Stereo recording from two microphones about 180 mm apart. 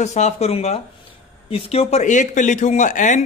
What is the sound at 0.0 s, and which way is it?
A man's voice, 40° left (ahead or behind).